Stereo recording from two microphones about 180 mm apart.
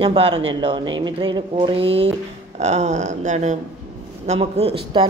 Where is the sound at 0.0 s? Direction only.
30° right (ahead or behind).